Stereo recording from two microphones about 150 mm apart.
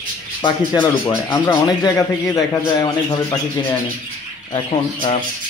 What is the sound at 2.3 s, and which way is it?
Speech, 30° left (ahead or behind).